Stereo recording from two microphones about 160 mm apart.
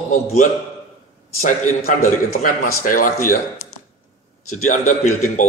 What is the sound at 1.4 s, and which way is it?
A man's voice, 50° left (ahead or behind).